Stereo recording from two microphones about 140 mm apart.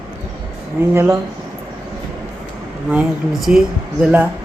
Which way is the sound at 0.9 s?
20° right (ahead or behind).